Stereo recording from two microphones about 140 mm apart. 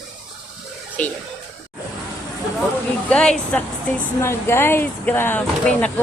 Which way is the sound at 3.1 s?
5° left (ahead or behind).